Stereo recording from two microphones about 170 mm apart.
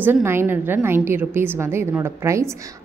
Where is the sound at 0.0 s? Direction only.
15° right (ahead or behind).